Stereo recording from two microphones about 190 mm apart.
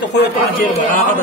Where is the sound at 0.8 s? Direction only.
45° left (ahead or behind).